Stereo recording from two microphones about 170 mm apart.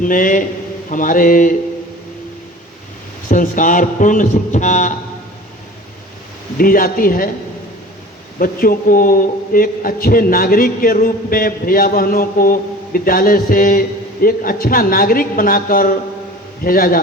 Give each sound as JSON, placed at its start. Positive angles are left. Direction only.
{"t": 0.0, "sound": "a man's voice", "side_deg": 55}
{"t": 3.2, "sound": "a man's voice", "side_deg": 50}
{"t": 6.6, "sound": "a man's voice", "side_deg": 60}
{"t": 8.4, "sound": "a man's voice", "side_deg": 60}